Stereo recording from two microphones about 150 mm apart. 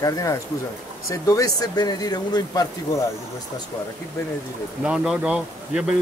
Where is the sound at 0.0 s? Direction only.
20° left (ahead or behind).